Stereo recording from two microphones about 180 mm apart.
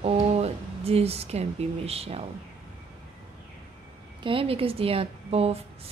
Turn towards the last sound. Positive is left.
turn(degrees=-35)  # may be behind; listen again after turning